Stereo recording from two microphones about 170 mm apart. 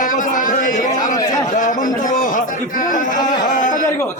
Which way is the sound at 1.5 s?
50° left (ahead or behind).